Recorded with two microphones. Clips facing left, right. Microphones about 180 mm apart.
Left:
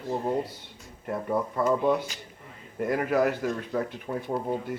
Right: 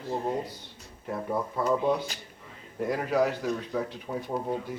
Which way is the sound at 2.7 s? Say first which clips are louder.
Left 1 dB; 5° left (ahead or behind).